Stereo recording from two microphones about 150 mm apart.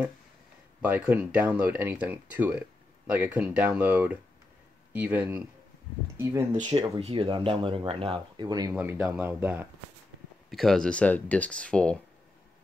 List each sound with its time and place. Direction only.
0.8 s speech: 10° right (ahead or behind)
6.6 s speech: 25° right (ahead or behind)
7.0 s speech: 40° right (ahead or behind)
8.7 s speech: 15° right (ahead or behind)
10.5 s speech: centre (ahead or behind)